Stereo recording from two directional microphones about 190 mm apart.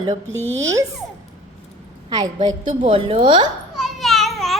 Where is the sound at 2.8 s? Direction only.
30° right (ahead or behind).